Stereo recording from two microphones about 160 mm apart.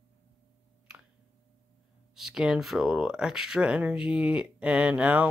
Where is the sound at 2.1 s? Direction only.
Centre (ahead or behind).